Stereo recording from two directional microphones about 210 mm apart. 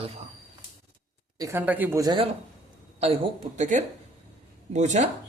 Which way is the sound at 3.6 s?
35° right (ahead or behind).